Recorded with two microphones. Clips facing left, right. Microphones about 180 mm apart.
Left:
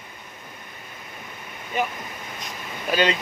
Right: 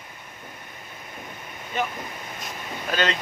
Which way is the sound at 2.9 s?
10° left (ahead or behind).